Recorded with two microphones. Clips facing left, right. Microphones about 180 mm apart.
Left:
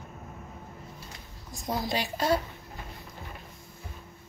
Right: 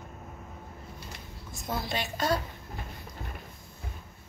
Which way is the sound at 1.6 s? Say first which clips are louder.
Left 3 dB; 35° left (ahead or behind).